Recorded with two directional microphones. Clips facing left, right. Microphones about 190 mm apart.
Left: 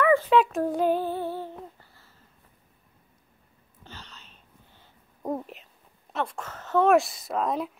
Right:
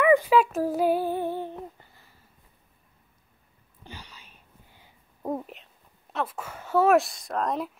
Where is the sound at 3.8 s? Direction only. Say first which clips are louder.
Right 2 dB; 10° right (ahead or behind).